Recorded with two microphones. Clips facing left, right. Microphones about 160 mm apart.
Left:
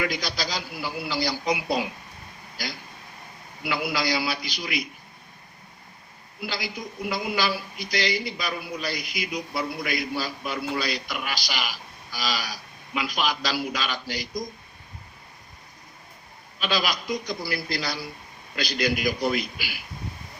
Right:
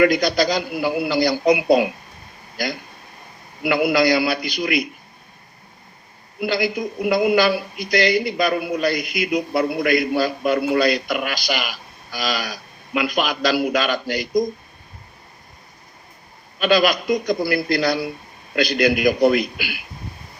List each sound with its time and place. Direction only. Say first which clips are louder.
0.0 s speech: right 12 dB; 55° right (ahead or behind)
6.4 s speech: right 11 dB; 55° right (ahead or behind)
16.6 s speech: right 10 dB; 55° right (ahead or behind)